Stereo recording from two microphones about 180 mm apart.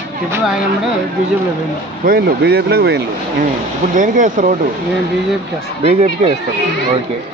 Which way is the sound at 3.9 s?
45° right (ahead or behind).